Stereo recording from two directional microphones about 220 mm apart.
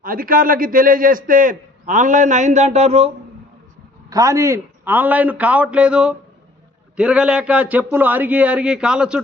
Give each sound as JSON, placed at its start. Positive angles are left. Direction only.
{"t": 0.0, "sound": "a man's voice", "side_deg": -40}
{"t": 4.1, "sound": "a man's voice", "side_deg": -15}